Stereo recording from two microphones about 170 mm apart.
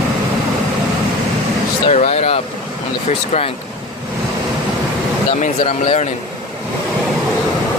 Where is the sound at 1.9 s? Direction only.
40° left (ahead or behind).